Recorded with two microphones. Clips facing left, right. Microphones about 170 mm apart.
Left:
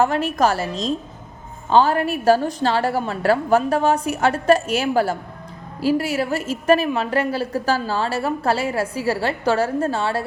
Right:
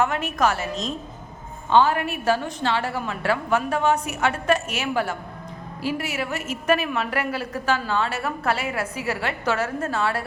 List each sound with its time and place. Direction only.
0.0 s a woman's voice: 30° left (ahead or behind)